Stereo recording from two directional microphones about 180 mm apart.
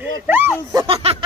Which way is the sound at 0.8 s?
30° right (ahead or behind).